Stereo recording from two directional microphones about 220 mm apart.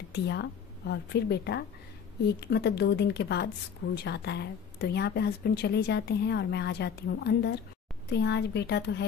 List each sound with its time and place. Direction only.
0.1 s a woman's voice: 50° left (ahead or behind)